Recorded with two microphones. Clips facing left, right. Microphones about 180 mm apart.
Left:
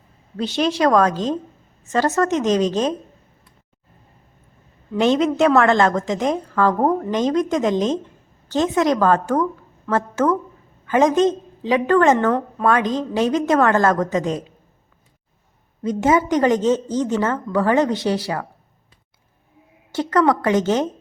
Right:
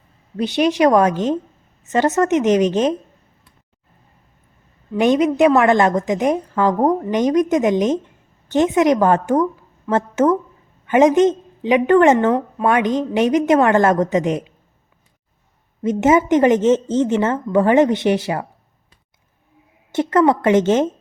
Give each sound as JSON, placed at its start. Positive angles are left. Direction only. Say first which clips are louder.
{"t": 0.3, "sound": "a woman's voice", "louder": "right 4 dB", "side_deg": -15}
{"t": 4.9, "sound": "a woman's voice", "louder": "right 2 dB", "side_deg": -15}
{"t": 15.8, "sound": "a woman's voice", "louder": "right 3 dB", "side_deg": -20}
{"t": 19.9, "sound": "a woman's voice", "louder": "right 2 dB", "side_deg": -20}